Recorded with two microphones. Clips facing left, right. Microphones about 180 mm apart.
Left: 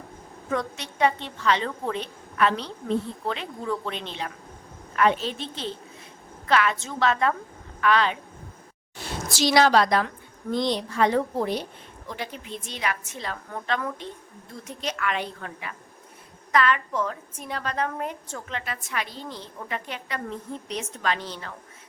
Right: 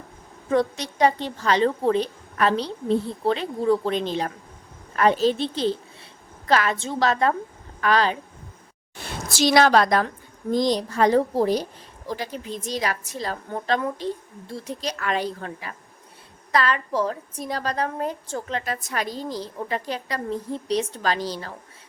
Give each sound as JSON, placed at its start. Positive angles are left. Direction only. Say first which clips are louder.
{"t": 0.5, "sound": "a woman's voice", "louder": "right 7 dB", "side_deg": -35}
{"t": 9.0, "sound": "a woman's voice", "louder": "right 2 dB", "side_deg": -50}